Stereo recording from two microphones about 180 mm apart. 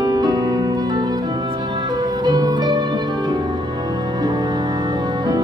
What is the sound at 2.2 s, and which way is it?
Music, 20° right (ahead or behind).